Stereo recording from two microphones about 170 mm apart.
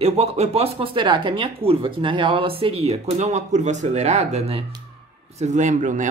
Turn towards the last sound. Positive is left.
turn(degrees=-45)  # may be behind; listen again after turning